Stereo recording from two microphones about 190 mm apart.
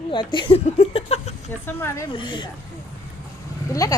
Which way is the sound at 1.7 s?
10° left (ahead or behind).